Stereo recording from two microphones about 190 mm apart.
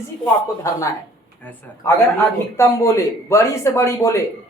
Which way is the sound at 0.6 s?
15° left (ahead or behind).